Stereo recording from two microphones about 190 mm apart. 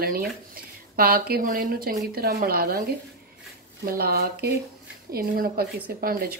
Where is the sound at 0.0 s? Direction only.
50° right (ahead or behind).